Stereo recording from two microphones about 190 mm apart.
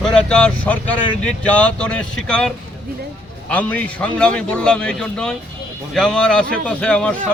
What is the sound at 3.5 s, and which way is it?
Speech, 5° left (ahead or behind).